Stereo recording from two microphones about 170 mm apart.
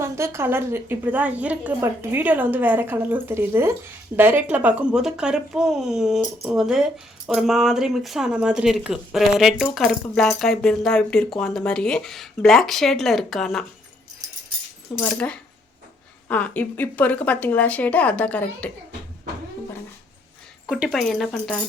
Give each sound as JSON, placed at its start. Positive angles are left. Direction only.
{"t": 0.0, "sound": "a woman's voice", "side_deg": -15}
{"t": 15.1, "sound": "speech", "side_deg": 5}
{"t": 20.7, "sound": "speech", "side_deg": 0}